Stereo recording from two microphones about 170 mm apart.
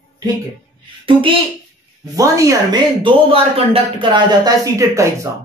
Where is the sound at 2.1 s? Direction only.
20° right (ahead or behind).